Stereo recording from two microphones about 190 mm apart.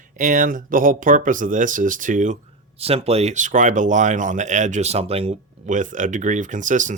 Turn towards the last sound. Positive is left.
turn(degrees=-40)  # may be behind; listen again after turning